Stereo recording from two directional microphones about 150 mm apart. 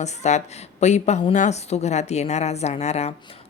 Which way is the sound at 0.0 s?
50° left (ahead or behind).